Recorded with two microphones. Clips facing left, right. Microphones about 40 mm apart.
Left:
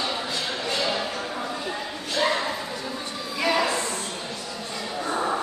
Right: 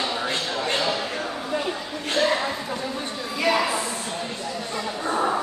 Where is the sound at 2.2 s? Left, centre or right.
Right.